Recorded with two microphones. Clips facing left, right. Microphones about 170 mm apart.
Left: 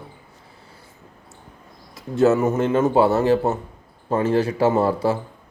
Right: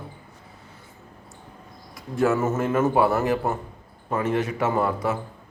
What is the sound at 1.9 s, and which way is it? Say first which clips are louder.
A man's voice: left 5 dB; 25° left (ahead or behind).